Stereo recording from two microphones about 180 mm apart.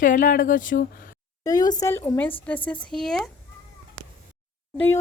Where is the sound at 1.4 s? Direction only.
20° left (ahead or behind); by 3.3 s 5° left (ahead or behind).